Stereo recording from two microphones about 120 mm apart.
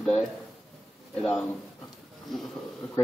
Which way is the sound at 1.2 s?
5° left (ahead or behind).